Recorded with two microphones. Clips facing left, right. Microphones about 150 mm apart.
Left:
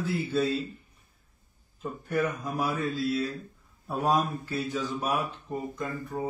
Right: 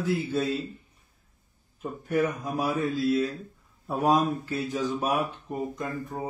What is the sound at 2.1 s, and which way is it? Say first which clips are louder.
Speech: right 3 dB; 20° right (ahead or behind).